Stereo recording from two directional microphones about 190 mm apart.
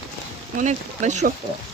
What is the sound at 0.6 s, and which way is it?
Speech, 40° right (ahead or behind).